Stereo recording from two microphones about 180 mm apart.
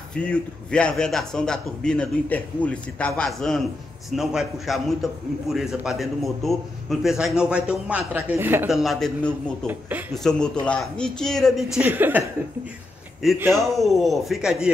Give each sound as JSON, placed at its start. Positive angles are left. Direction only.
{"t": 0.1, "sound": "a man's voice", "side_deg": 5}
{"t": 8.7, "sound": "a man's voice", "side_deg": 0}
{"t": 9.7, "sound": "speech", "side_deg": -10}
{"t": 10.1, "sound": "a man's voice", "side_deg": 5}
{"t": 13.4, "sound": "speech", "side_deg": -15}
{"t": 13.7, "sound": "a man's voice", "side_deg": 0}